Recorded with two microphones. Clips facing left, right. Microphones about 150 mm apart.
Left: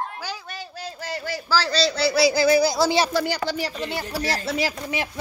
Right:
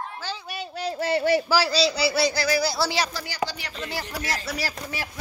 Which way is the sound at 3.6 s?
30° left (ahead or behind).